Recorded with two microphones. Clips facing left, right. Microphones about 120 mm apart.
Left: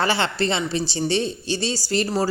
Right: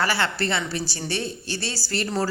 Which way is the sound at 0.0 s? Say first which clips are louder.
Left 3 dB; 20° left (ahead or behind).